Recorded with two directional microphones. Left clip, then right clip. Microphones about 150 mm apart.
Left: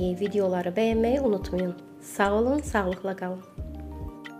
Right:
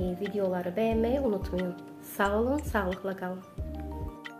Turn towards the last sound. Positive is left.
turn(degrees=30)  # may be behind; listen again after turning